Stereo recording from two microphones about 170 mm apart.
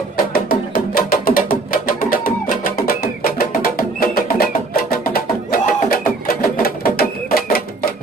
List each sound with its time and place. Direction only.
0.3 s music: 60° left (ahead or behind)